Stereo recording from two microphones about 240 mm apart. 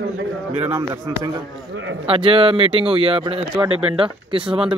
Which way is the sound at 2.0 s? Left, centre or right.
Right.